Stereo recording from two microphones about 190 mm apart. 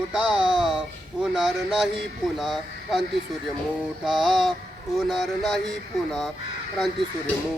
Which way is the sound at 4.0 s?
Centre (ahead or behind).